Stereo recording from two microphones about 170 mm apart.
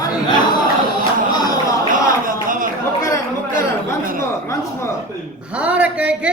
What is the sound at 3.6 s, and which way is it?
Speech, 55° right (ahead or behind).